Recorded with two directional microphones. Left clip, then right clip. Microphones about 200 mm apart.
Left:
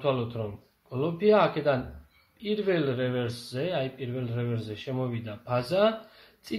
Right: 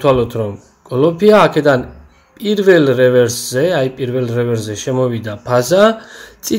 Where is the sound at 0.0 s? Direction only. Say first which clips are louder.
Right 16 dB; 30° right (ahead or behind).